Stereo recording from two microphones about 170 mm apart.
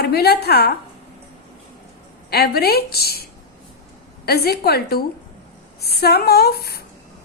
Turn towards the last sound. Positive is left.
turn(degrees=65)  # may be behind; listen again after turning